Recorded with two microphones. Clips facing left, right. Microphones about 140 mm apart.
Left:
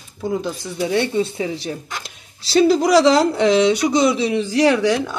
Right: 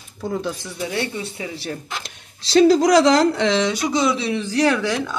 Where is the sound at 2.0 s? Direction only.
5° left (ahead or behind).